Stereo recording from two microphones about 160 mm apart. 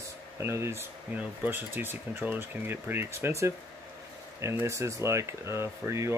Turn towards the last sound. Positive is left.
turn(degrees=-15)  # may be behind; listen again after turning